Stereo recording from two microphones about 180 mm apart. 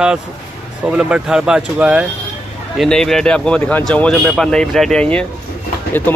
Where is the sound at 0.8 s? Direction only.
5° right (ahead or behind).